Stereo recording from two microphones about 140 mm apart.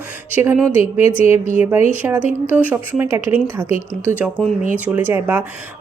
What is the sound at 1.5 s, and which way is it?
Speech, 15° right (ahead or behind).